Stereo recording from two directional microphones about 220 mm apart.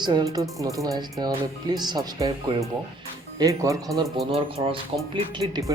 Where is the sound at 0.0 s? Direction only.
20° right (ahead or behind).